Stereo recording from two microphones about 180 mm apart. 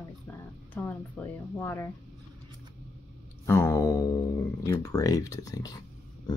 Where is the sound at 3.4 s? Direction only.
15° left (ahead or behind).